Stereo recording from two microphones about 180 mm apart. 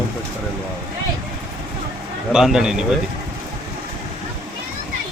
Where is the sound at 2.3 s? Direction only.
5° right (ahead or behind).